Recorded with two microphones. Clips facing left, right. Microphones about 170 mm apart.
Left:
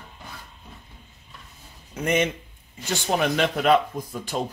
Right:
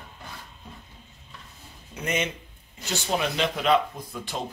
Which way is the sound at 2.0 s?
55° left (ahead or behind).